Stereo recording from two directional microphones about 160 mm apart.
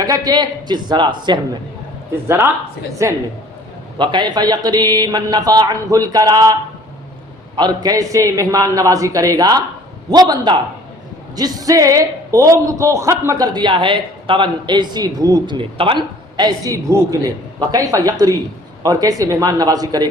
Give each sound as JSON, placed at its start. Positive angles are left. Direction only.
{"t": 0.0, "sound": "a man's voice", "side_deg": -25}
{"t": 2.2, "sound": "speech", "side_deg": -15}
{"t": 3.9, "sound": "a man's voice", "side_deg": -30}